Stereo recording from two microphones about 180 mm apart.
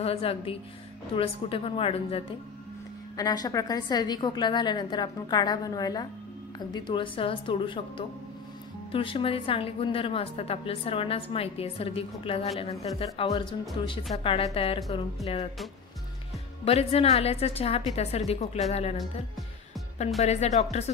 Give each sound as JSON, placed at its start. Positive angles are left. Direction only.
{"t": 0.0, "sound": "a woman's voice", "side_deg": 35}
{"t": 3.2, "sound": "a woman's voice", "side_deg": 20}
{"t": 8.9, "sound": "a woman's voice", "side_deg": 30}
{"t": 16.6, "sound": "a woman's voice", "side_deg": 35}
{"t": 20.2, "sound": "a woman's voice", "side_deg": 40}